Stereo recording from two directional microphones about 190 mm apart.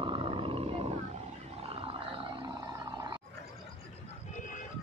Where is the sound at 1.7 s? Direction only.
30° right (ahead or behind).